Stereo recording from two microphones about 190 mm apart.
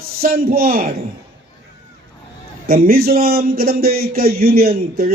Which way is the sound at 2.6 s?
50° right (ahead or behind).